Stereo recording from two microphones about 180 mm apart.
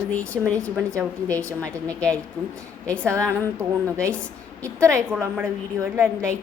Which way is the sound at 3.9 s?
5° left (ahead or behind).